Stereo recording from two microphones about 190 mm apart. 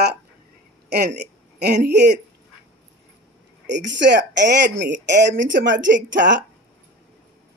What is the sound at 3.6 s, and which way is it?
A woman's voice, 65° right (ahead or behind).